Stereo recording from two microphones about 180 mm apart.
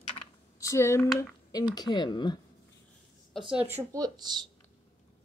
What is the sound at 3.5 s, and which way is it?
Speech, 10° right (ahead or behind).